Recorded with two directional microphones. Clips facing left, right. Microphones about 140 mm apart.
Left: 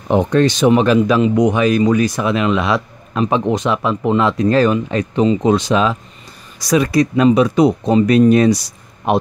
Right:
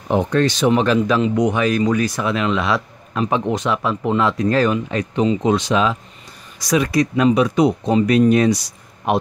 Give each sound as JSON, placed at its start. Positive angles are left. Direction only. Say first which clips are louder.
{"t": 0.3, "sound": "speech", "louder": "left 4 dB", "side_deg": 15}